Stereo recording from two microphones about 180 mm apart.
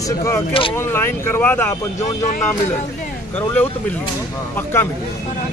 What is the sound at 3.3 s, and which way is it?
Speech, 10° left (ahead or behind).